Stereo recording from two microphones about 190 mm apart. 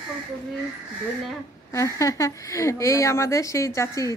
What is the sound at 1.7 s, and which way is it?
Speech, 15° left (ahead or behind).